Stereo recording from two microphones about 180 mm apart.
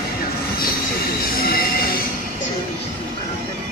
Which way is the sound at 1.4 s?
55° left (ahead or behind).